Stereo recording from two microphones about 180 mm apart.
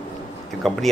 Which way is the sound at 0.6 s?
Centre (ahead or behind).